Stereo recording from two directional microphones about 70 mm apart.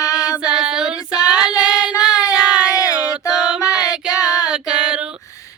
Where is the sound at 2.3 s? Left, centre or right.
Centre.